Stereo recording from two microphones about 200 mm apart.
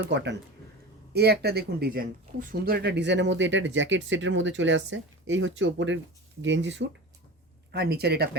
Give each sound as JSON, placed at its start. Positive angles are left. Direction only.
{"t": 0.0, "sound": "speech", "side_deg": -60}
{"t": 7.7, "sound": "speech", "side_deg": -55}